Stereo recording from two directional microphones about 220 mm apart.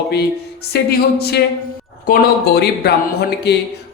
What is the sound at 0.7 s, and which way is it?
Speech, 45° left (ahead or behind).